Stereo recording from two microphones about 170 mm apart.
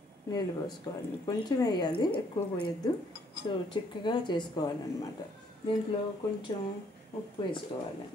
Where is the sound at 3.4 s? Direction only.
30° left (ahead or behind).